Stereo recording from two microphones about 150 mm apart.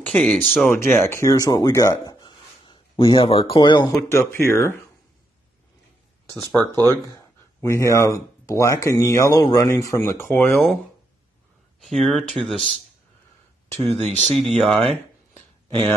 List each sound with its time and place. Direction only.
0.0 s speech: 5° left (ahead or behind)
0.7 s speech: 15° left (ahead or behind)
4.1 s speech: 15° left (ahead or behind)
6.2 s speech: 15° left (ahead or behind)
10.2 s speech: 5° left (ahead or behind)
11.8 s speech: centre (ahead or behind)
14.3 s speech: centre (ahead or behind)